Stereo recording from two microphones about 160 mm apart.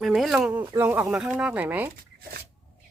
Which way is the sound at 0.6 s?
20° right (ahead or behind).